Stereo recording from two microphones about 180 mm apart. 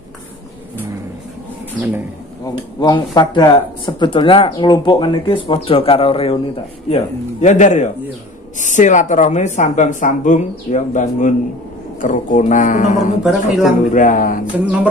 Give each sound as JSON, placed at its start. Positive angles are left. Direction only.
{"t": 2.4, "sound": "a man's voice", "side_deg": 25}
{"t": 13.2, "sound": "speech", "side_deg": 0}
{"t": 13.9, "sound": "a woman's voice", "side_deg": 50}
{"t": 14.4, "sound": "music", "side_deg": -5}